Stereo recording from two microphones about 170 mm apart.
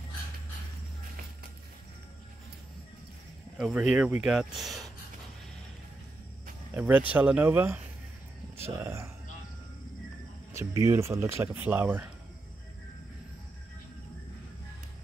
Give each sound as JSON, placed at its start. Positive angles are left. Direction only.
{"t": 3.5, "sound": "speech", "side_deg": -5}
{"t": 6.7, "sound": "speech", "side_deg": -10}
{"t": 10.5, "sound": "cricket", "side_deg": -15}
{"t": 10.9, "sound": "speech", "side_deg": -15}